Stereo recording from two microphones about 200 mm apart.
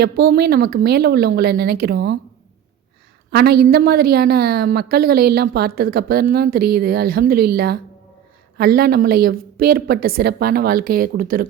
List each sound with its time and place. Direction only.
0.0 s a woman's voice: 50° right (ahead or behind)
3.3 s a woman's voice: 50° right (ahead or behind)